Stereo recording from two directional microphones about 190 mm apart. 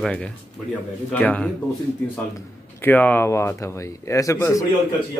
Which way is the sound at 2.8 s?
10° left (ahead or behind).